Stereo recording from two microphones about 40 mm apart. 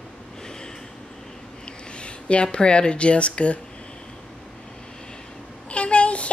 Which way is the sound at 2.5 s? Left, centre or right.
Left.